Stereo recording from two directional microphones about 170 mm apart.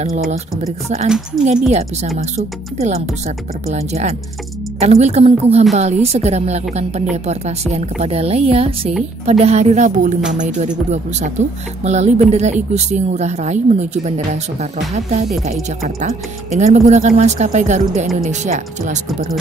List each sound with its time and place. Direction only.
0.8 s a woman's voice: 40° right (ahead or behind)
2.1 s a woman's voice: 40° right (ahead or behind)